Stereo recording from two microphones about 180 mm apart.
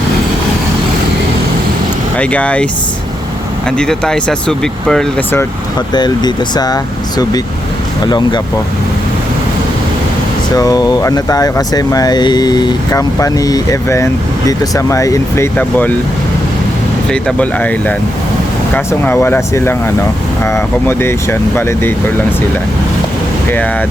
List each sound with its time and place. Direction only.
2.1 s speech: 5° left (ahead or behind)
3.7 s speech: 5° left (ahead or behind)
5.9 s speech: 25° left (ahead or behind)
8.0 s speech: 25° left (ahead or behind)
10.6 s speech: 20° left (ahead or behind)
17.1 s speech: 5° left (ahead or behind)